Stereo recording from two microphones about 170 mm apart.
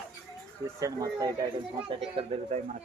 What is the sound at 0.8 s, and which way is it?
Speech, 20° right (ahead or behind).